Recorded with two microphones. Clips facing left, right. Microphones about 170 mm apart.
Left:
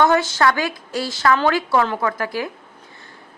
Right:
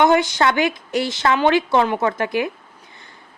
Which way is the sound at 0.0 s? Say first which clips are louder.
Right 1 dB; 20° right (ahead or behind).